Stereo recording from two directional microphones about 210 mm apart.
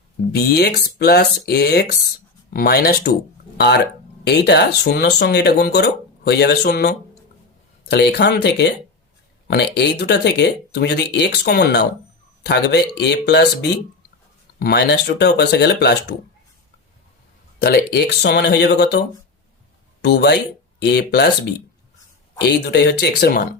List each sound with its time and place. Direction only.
0.3 s speech: 50° left (ahead or behind)
4.2 s speech: 55° left (ahead or behind)
17.6 s speech: 50° left (ahead or behind)